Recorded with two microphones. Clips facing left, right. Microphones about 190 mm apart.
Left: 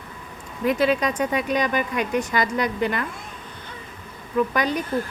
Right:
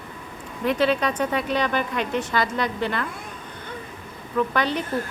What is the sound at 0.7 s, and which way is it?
Speech, 10° left (ahead or behind).